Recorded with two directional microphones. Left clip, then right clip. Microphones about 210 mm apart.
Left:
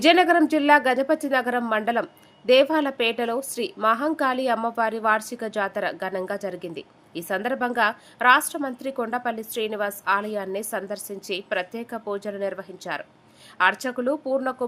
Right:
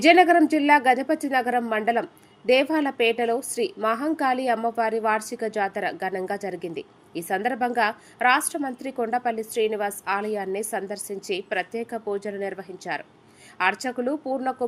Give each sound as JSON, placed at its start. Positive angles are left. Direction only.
{"t": 0.0, "sound": "a woman's voice", "side_deg": 5}
{"t": 6.6, "sound": "a woman's voice", "side_deg": 50}
{"t": 7.2, "sound": "a woman's voice", "side_deg": 5}